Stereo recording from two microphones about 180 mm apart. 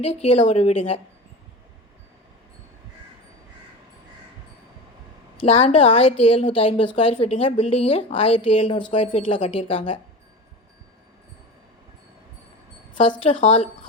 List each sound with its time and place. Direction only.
0.0 s a woman's voice: 35° left (ahead or behind)
5.4 s a woman's voice: 35° left (ahead or behind)
12.9 s speech: 30° left (ahead or behind)
13.3 s speech: 45° left (ahead or behind)